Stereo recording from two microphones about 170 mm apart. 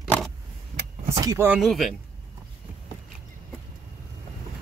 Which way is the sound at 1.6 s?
Centre (ahead or behind).